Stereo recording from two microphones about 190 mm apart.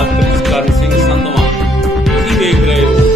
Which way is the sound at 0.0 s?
Centre (ahead or behind).